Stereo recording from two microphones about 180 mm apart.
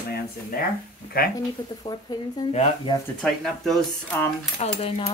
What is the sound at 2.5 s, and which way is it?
Speech, 35° left (ahead or behind).